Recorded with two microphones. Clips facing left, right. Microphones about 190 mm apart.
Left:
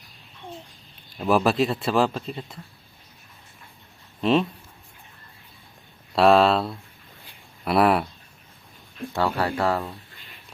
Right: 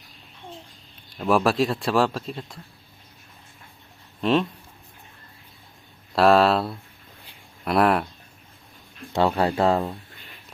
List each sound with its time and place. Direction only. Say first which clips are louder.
1.2 s speech: even; centre (ahead or behind)
4.2 s speech: left 1 dB; 5° left (ahead or behind)
6.1 s speech: even; centre (ahead or behind)
9.1 s speech: right 3 dB; 25° right (ahead or behind)